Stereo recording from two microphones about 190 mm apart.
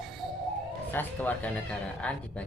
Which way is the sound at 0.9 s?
10° left (ahead or behind).